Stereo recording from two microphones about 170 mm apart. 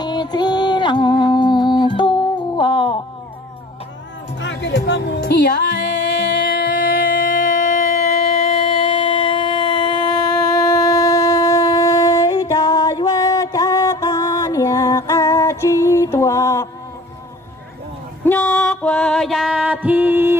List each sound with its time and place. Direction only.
0.0 s music: 25° left (ahead or behind)
4.4 s speech: 90° left
5.9 s a sound: 75° left (ahead or behind); by 16.6 s 15° left (ahead or behind)
18.2 s music: 10° left (ahead or behind); by 20.3 s 10° right (ahead or behind)